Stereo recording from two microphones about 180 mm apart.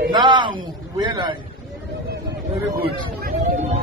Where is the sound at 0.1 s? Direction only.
25° right (ahead or behind).